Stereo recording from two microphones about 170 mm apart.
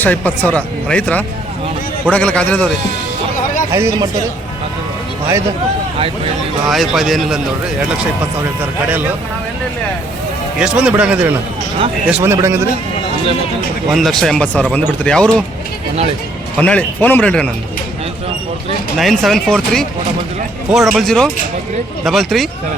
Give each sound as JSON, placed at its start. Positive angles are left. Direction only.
{"t": 0.0, "sound": "speech", "side_deg": 10}
{"t": 3.7, "sound": "a man's voice", "side_deg": -15}
{"t": 6.7, "sound": "speech", "side_deg": 0}
{"t": 10.6, "sound": "a man's voice", "side_deg": -5}
{"t": 13.9, "sound": "speech", "side_deg": 0}
{"t": 16.6, "sound": "speech", "side_deg": 10}
{"t": 18.9, "sound": "speech", "side_deg": 0}